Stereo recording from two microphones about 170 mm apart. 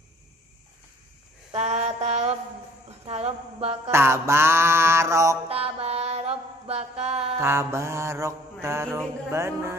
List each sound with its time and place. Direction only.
1.5 s a sound: 40° right (ahead or behind)
3.9 s mantra: 15° right (ahead or behind)
5.5 s mantra: 35° right (ahead or behind)
7.3 s mantra: 15° right (ahead or behind)